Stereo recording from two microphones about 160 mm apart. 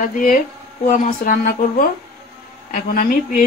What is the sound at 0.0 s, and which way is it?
A woman's voice, 55° left (ahead or behind).